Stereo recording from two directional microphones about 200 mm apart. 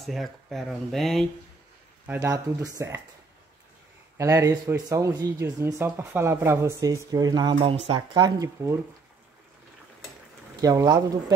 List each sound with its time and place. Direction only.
0.0 s speech: centre (ahead or behind)
2.0 s speech: 10° right (ahead or behind)
4.2 s speech: 15° right (ahead or behind)
10.5 s speech: 20° right (ahead or behind)